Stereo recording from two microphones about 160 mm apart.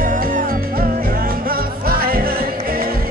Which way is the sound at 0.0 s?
60° right (ahead or behind).